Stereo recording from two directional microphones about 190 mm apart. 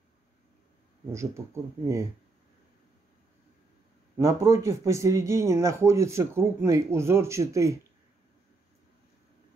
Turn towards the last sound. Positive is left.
turn(degrees=-15)  # may be behind; listen again after turning